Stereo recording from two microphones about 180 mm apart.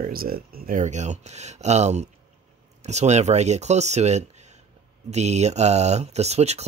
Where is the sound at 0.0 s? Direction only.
55° right (ahead or behind).